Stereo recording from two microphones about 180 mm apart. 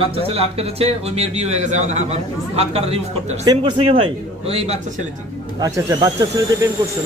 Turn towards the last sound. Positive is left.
turn(degrees=-20)  # may be behind; listen again after turning